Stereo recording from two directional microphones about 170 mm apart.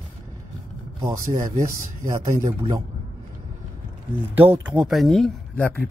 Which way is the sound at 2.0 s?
15° right (ahead or behind).